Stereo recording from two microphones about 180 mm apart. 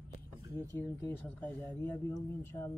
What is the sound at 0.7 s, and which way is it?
Speech, 10° left (ahead or behind).